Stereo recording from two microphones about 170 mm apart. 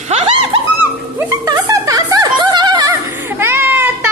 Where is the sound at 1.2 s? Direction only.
20° right (ahead or behind).